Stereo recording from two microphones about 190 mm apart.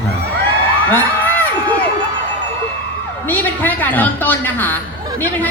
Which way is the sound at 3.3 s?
10° left (ahead or behind).